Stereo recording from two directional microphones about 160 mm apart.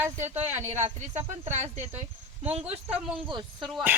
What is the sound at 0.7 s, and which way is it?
Speech, 45° right (ahead or behind).